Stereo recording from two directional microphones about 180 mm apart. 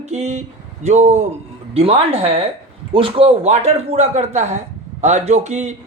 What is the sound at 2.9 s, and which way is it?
A man's voice, 30° right (ahead or behind).